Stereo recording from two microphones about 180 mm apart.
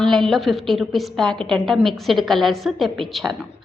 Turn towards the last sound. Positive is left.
turn(degrees=0)  # may be behind; listen again after turning